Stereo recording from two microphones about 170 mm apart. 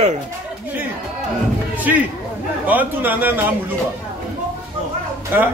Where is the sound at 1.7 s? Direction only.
10° right (ahead or behind).